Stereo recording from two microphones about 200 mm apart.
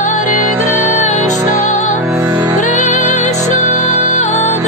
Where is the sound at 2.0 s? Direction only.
10° right (ahead or behind).